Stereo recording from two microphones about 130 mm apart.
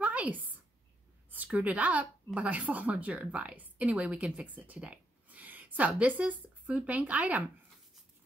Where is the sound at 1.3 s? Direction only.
10° right (ahead or behind).